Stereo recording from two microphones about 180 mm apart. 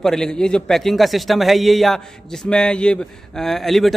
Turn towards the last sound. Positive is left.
turn(degrees=0)  # may be behind; listen again after turning